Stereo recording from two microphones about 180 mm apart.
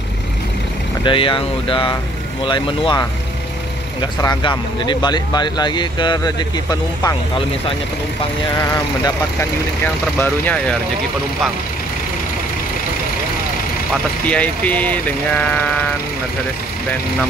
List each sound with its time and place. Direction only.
1.0 s speech: 30° left (ahead or behind)
4.2 s speech: 25° left (ahead or behind)
10.1 s speech: 10° left (ahead or behind)
14.2 s speech: 5° left (ahead or behind)